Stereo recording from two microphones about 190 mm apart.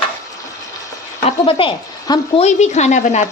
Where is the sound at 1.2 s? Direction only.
30° left (ahead or behind).